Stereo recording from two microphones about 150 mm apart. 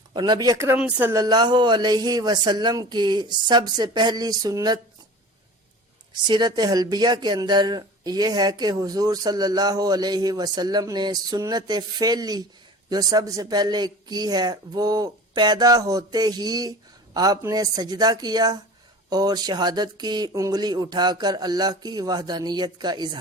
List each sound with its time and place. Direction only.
0.1 s speech: 30° right (ahead or behind)
0.8 s speech: 10° right (ahead or behind)
1.2 s speech: 30° right (ahead or behind)
6.2 s speech: 30° right (ahead or behind)